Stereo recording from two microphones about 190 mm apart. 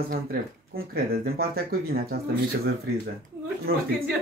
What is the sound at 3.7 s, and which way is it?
Speech, 55° right (ahead or behind).